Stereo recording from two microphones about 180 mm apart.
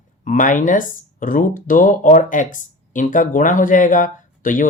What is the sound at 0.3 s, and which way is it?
Speech, 45° left (ahead or behind).